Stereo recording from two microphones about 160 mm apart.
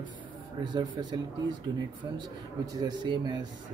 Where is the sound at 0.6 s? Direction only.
25° right (ahead or behind).